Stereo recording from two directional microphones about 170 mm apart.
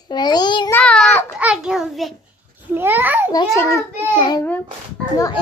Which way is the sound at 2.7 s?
10° right (ahead or behind).